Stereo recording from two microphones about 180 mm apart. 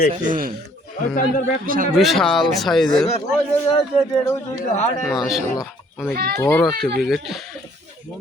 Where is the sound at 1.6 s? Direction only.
50° right (ahead or behind).